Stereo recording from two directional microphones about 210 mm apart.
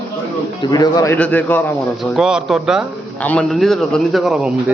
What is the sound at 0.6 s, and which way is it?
A man's voice, 20° left (ahead or behind).